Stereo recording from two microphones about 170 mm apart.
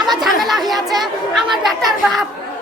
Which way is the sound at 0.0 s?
Centre (ahead or behind).